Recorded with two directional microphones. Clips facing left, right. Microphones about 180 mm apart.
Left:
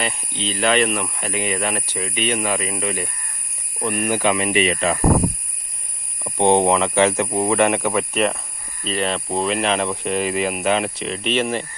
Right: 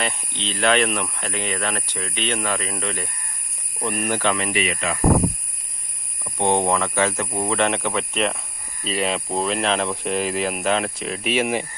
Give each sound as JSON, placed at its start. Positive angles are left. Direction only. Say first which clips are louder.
{"t": 0.0, "sound": "speech", "louder": "left 2 dB", "side_deg": 0}
{"t": 4.2, "sound": "speech", "louder": "left 4 dB", "side_deg": 15}
{"t": 6.2, "sound": "speech", "louder": "left 5 dB", "side_deg": 30}